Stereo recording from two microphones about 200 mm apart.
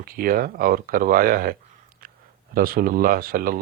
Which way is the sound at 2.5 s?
45° right (ahead or behind).